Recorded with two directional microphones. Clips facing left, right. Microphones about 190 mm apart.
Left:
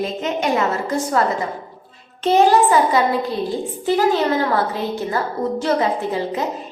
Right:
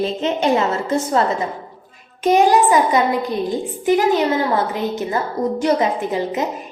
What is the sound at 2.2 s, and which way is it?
A woman's voice, 15° right (ahead or behind).